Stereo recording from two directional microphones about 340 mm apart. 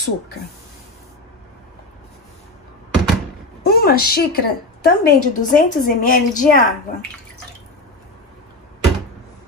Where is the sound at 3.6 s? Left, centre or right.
Left.